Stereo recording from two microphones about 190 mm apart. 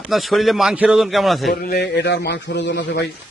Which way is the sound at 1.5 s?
55° left (ahead or behind).